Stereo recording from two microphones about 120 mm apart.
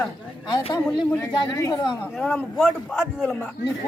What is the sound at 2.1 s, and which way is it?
A man's voice, 5° left (ahead or behind).